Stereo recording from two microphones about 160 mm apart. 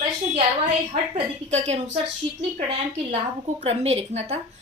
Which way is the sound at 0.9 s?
45° right (ahead or behind).